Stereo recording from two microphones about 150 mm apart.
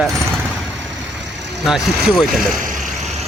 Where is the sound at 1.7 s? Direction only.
Centre (ahead or behind).